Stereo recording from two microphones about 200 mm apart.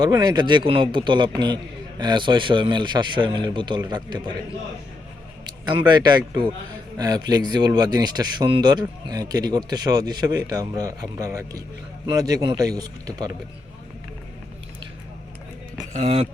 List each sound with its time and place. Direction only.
0.0 s speech: 20° right (ahead or behind)
5.5 s speech: 20° right (ahead or behind)
15.9 s speech: 35° right (ahead or behind)